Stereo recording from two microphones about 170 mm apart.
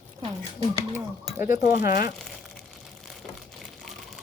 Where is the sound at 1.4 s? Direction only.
55° left (ahead or behind).